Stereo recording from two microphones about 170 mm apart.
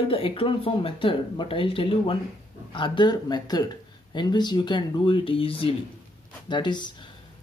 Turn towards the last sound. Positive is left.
turn(degrees=25)  # may be behind; listen again after turning